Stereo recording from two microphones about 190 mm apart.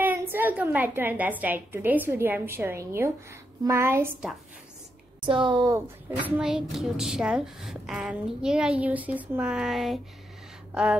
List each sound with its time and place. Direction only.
0.0 s a woman's voice: 10° right (ahead or behind)
5.2 s speech: 25° right (ahead or behind)
5.8 s a woman's voice: 10° right (ahead or behind)